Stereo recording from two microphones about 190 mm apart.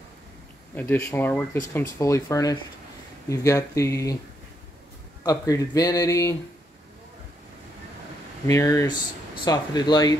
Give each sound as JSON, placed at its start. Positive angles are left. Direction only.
{"t": 0.7, "sound": "speech", "side_deg": 10}
{"t": 5.2, "sound": "speech", "side_deg": 20}
{"t": 8.5, "sound": "speech", "side_deg": 15}